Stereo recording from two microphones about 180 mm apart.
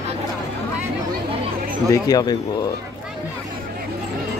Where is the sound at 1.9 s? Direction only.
20° left (ahead or behind).